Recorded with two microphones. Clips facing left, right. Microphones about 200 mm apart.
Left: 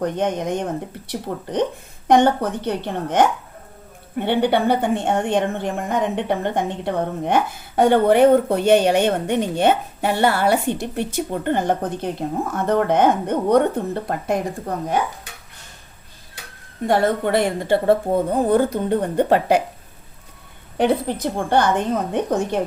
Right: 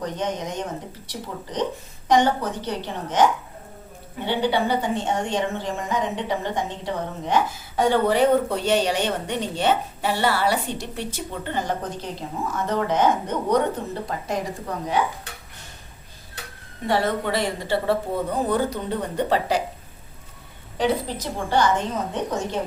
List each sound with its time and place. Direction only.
0.0 s a woman's voice: 55° left (ahead or behind)
16.8 s speech: 50° left (ahead or behind)
20.7 s a woman's voice: 55° left (ahead or behind)